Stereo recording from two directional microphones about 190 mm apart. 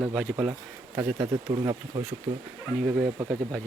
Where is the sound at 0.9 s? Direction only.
15° right (ahead or behind).